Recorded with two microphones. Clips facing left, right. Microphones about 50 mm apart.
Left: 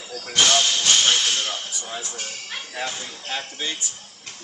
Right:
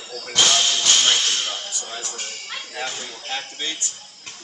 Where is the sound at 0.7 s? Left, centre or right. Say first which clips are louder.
Even; centre.